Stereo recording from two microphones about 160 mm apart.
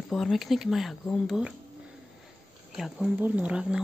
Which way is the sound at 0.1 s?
Centre (ahead or behind).